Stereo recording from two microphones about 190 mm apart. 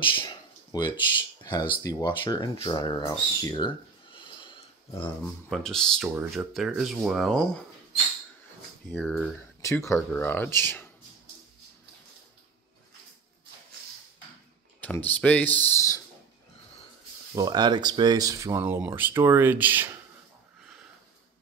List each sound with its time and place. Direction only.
0.0 s speech: 25° left (ahead or behind)
4.4 s a sound: 25° left (ahead or behind)
5.5 s speech: 5° left (ahead or behind)
8.9 s speech: centre (ahead or behind)
9.6 s speech: 15° left (ahead or behind)
14.8 s speech: 10° left (ahead or behind)
17.4 s speech: 20° right (ahead or behind)